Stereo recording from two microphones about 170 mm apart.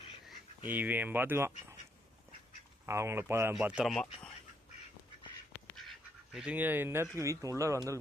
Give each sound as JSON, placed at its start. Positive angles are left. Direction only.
{"t": 0.7, "sound": "speech", "side_deg": -10}
{"t": 2.8, "sound": "speech", "side_deg": -15}
{"t": 6.3, "sound": "speech", "side_deg": -5}